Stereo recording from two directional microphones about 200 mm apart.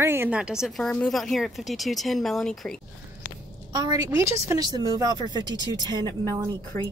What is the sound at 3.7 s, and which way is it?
Speech, 20° right (ahead or behind).